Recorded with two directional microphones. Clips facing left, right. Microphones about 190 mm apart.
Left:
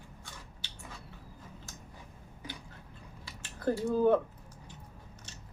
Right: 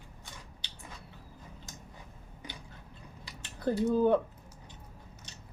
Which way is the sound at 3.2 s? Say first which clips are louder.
Even; 20° right (ahead or behind).